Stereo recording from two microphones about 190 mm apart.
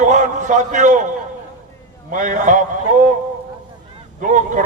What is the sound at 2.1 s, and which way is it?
Speech, 40° right (ahead or behind).